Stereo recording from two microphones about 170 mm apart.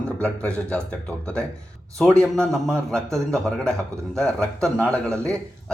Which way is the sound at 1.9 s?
5° left (ahead or behind).